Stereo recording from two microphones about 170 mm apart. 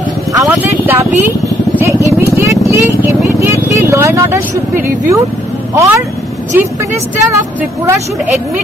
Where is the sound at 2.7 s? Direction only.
15° right (ahead or behind).